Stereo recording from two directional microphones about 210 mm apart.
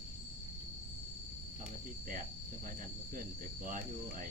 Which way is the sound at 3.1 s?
40° right (ahead or behind).